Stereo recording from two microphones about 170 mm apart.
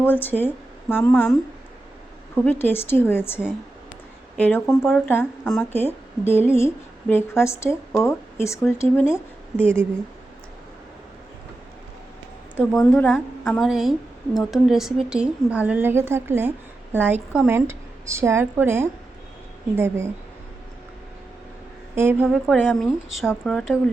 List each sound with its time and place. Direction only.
0.0 s a woman's voice: 10° left (ahead or behind)
12.5 s a woman's voice: 5° left (ahead or behind); by 20.1 s 15° right (ahead or behind)
21.9 s a woman's voice: 15° right (ahead or behind)
22.3 s a woman's voice: centre (ahead or behind)